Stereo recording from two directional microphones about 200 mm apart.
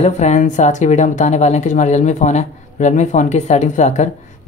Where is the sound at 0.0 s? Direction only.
35° left (ahead or behind).